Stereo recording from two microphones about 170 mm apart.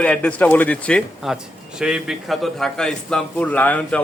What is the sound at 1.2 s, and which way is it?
A man's voice, 5° right (ahead or behind).